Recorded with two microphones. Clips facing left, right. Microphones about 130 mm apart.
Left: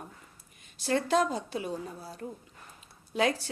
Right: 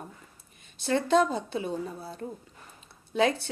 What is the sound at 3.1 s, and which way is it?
Speech, 25° right (ahead or behind).